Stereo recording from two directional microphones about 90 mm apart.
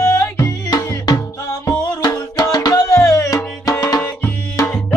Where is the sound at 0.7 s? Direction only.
45° left (ahead or behind).